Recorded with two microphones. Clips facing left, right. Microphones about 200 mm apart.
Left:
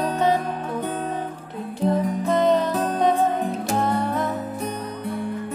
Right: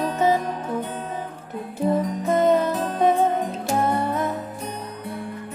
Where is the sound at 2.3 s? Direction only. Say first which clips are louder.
Right 1 dB; 10° right (ahead or behind).